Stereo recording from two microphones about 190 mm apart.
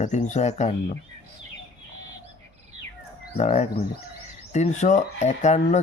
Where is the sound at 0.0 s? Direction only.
40° left (ahead or behind).